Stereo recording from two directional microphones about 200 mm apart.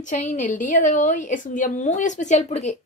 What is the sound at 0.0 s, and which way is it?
A woman's voice, 40° left (ahead or behind).